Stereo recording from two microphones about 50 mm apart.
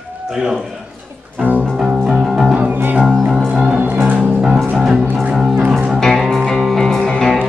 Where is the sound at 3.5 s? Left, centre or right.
Centre.